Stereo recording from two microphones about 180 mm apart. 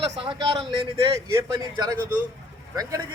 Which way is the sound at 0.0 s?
30° right (ahead or behind).